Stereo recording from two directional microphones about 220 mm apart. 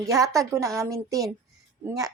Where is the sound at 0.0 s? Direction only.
15° right (ahead or behind).